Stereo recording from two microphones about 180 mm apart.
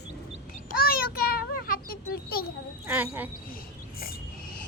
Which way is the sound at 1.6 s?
55° left (ahead or behind).